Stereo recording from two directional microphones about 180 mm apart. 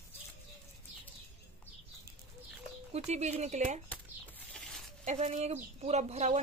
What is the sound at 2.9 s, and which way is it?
Speech, 40° right (ahead or behind).